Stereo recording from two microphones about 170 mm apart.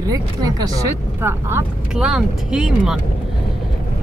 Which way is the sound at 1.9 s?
5° right (ahead or behind).